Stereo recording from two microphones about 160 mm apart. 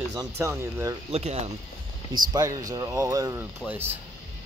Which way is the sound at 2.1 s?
25° right (ahead or behind).